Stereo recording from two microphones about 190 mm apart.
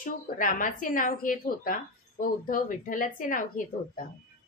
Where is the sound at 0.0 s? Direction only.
45° left (ahead or behind).